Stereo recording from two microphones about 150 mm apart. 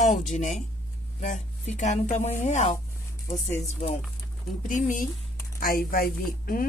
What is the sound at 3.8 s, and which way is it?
Speech, 50° left (ahead or behind).